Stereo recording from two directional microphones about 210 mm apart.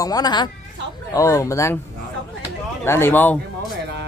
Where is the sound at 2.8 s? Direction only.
10° left (ahead or behind).